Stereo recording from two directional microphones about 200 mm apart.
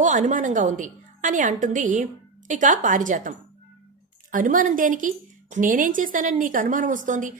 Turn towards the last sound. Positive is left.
turn(degrees=-40)  # may be behind; listen again after turning